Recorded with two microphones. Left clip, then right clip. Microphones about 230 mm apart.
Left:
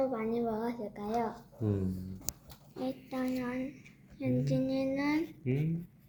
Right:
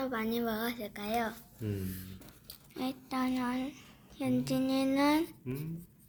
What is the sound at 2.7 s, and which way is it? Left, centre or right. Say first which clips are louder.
A woman's voice: right 1 dB; right.